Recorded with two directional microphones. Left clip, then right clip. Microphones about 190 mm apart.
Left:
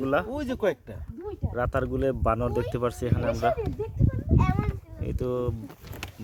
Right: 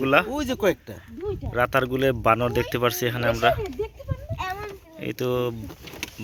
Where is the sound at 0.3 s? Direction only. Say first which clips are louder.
Right 4 dB; 60° right (ahead or behind).